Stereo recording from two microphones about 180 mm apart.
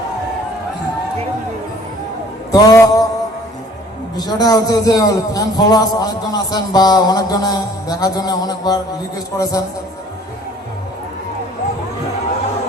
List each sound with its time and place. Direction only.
2.5 s a man's voice: 20° left (ahead or behind)
4.2 s a man's voice: 20° left (ahead or behind)